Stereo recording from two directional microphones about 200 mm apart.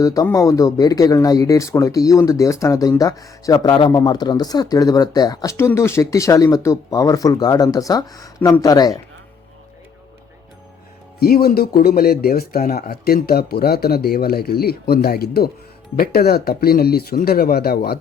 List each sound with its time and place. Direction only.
0.0 s speech: 15° left (ahead or behind)
11.2 s speech: 50° left (ahead or behind)